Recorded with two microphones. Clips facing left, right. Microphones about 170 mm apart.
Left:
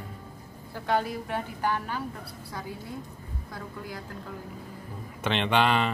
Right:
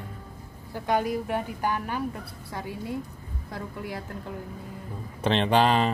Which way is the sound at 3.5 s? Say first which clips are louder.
Right 4 dB; 30° right (ahead or behind).